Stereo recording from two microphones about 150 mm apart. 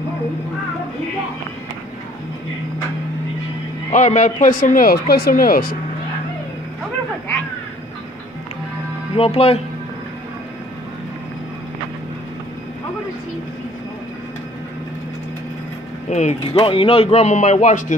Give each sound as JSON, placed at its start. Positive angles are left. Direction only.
{"t": 3.9, "sound": "speech", "side_deg": 50}
{"t": 5.0, "sound": "speech", "side_deg": 90}
{"t": 9.1, "sound": "speech", "side_deg": 40}
{"t": 16.1, "sound": "speech", "side_deg": 50}